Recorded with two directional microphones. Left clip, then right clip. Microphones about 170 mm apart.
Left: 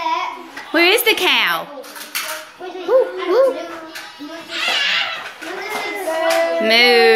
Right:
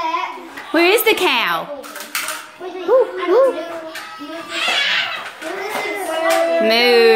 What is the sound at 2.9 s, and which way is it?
Music, 15° right (ahead or behind).